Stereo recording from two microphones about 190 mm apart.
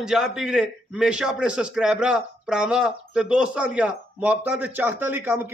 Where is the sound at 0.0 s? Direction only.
5° right (ahead or behind).